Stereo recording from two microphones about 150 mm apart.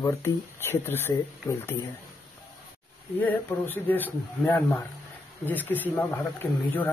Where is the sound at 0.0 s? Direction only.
15° left (ahead or behind).